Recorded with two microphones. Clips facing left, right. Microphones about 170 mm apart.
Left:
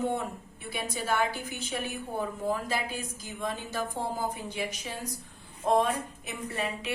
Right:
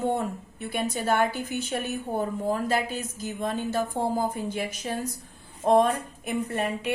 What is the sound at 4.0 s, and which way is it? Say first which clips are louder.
Speech: right 6 dB; 20° right (ahead or behind).